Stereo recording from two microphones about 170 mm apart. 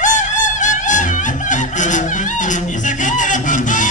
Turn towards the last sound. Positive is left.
turn(degrees=50)  # may be behind; listen again after turning